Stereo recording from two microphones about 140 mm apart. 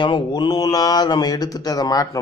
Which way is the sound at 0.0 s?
35° left (ahead or behind).